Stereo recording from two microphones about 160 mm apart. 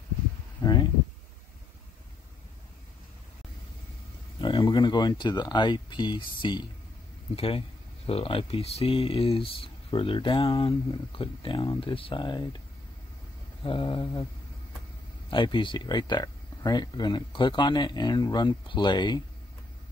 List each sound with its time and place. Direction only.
0.6 s a sound: 25° left (ahead or behind)
4.4 s speech: 30° left (ahead or behind)
13.7 s speech: 30° left (ahead or behind)
15.2 s speech: 30° left (ahead or behind)